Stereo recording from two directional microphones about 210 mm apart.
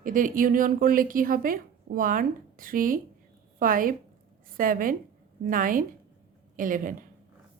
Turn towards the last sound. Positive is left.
turn(degrees=-40)  # may be behind; listen again after turning